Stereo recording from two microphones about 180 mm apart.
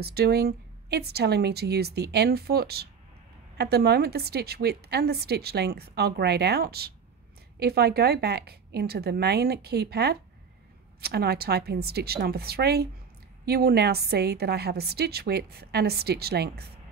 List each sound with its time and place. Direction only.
0.0 s a woman's voice: 65° right (ahead or behind)